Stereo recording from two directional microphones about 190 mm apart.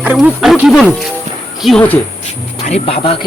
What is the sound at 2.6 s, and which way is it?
Speech, 35° left (ahead or behind).